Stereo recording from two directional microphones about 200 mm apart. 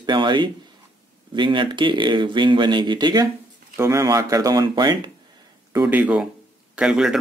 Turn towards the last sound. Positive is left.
turn(degrees=-5)  # may be behind; listen again after turning